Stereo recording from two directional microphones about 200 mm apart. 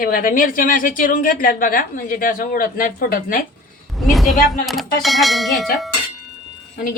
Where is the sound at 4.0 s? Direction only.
Centre (ahead or behind).